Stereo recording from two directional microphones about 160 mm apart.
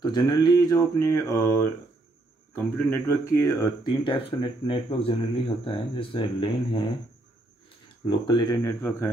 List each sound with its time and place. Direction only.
0.0 s speech: 25° left (ahead or behind)
4.0 s speech: 30° left (ahead or behind)
8.3 s speech: 25° left (ahead or behind)